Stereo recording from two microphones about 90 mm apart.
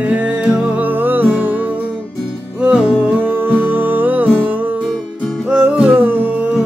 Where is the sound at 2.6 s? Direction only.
10° right (ahead or behind).